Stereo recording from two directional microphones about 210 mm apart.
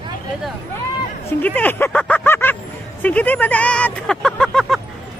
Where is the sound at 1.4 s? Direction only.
10° left (ahead or behind).